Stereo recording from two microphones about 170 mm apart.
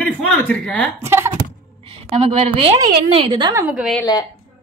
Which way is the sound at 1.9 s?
35° right (ahead or behind).